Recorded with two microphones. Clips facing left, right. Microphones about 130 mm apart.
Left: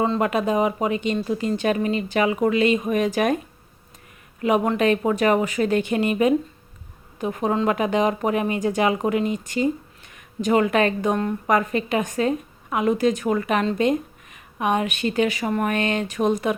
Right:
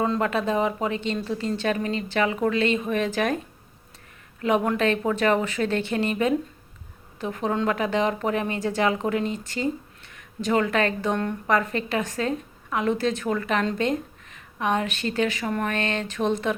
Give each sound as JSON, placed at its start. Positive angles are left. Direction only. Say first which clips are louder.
{"t": 0.2, "sound": "speech", "louder": "left 3 dB", "side_deg": 10}